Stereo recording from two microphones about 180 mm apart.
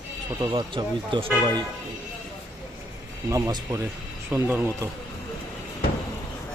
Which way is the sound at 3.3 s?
20° right (ahead or behind).